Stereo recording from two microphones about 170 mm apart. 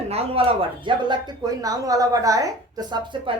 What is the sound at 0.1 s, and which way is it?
Speech, 35° right (ahead or behind).